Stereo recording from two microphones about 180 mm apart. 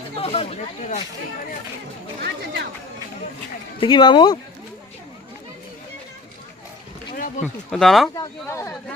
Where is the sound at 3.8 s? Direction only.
25° left (ahead or behind).